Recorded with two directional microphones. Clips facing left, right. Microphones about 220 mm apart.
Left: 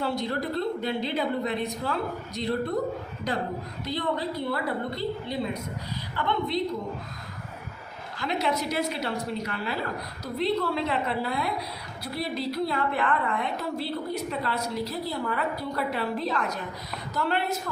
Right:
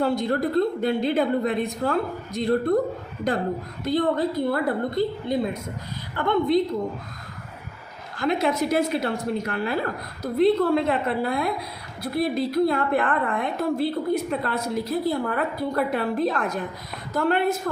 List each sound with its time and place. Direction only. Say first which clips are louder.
0.0 s a woman's voice: right 6 dB; 50° right (ahead or behind)
8.2 s a woman's voice: right 5 dB; 50° right (ahead or behind)